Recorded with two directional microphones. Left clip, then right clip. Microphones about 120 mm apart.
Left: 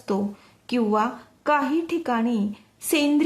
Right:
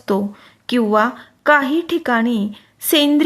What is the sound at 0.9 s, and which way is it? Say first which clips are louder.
A woman's voice: right 8 dB; 20° right (ahead or behind).